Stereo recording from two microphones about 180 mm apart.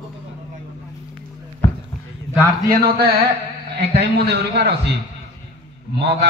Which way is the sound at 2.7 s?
60° right (ahead or behind).